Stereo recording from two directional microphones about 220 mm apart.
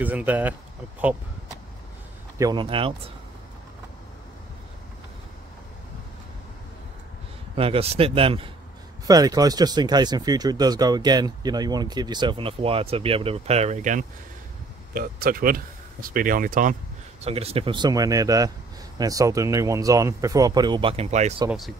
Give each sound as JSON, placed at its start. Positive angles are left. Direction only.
{"t": 0.0, "sound": "speech", "side_deg": -5}
{"t": 2.3, "sound": "speech", "side_deg": -20}
{"t": 7.5, "sound": "speech", "side_deg": -25}
{"t": 17.2, "sound": "speech", "side_deg": -25}
{"t": 21.5, "sound": "speech", "side_deg": 0}